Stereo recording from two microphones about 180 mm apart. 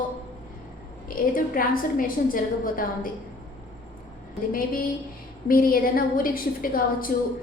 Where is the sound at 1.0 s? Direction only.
50° left (ahead or behind).